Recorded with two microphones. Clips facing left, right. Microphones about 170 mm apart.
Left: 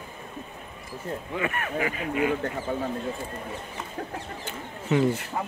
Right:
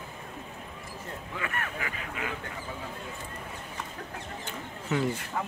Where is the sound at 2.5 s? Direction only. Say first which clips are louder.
Left 10 dB; 45° left (ahead or behind).